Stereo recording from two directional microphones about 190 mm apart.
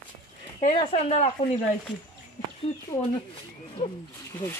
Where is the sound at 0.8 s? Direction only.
30° left (ahead or behind).